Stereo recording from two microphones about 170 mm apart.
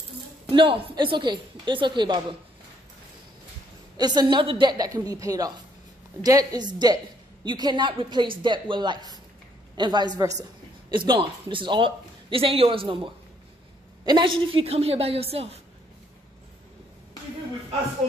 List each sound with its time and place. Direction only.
0.5 s a woman's voice: 30° right (ahead or behind)
3.9 s a woman's voice: 25° right (ahead or behind)